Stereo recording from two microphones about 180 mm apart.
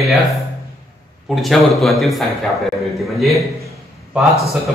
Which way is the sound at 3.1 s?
Centre (ahead or behind).